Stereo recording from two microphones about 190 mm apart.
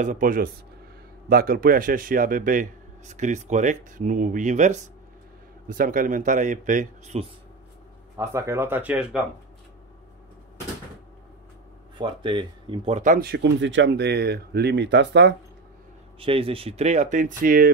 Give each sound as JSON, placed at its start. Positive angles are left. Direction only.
{"t": 0.0, "sound": "a man's voice", "side_deg": -45}
{"t": 8.2, "sound": "speech", "side_deg": -15}
{"t": 12.0, "sound": "speech", "side_deg": -25}
{"t": 16.2, "sound": "speech", "side_deg": -30}